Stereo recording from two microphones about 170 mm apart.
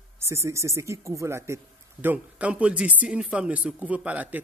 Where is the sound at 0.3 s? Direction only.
15° right (ahead or behind).